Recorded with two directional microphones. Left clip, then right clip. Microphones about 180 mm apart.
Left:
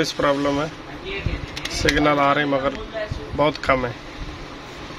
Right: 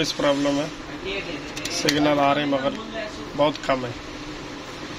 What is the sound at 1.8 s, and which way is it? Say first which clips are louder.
A man's voice: left 2 dB; 20° left (ahead or behind).